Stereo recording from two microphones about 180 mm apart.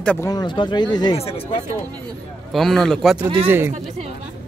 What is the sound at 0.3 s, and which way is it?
Speech, 25° left (ahead or behind).